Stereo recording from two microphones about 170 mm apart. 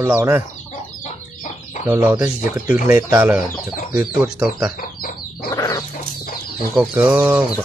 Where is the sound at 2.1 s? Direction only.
20° right (ahead or behind).